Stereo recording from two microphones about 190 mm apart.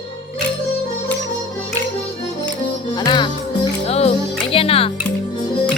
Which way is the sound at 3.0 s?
25° left (ahead or behind).